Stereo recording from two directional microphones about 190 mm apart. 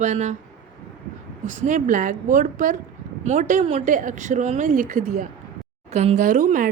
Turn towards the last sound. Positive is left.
turn(degrees=-45)  # may be behind; listen again after turning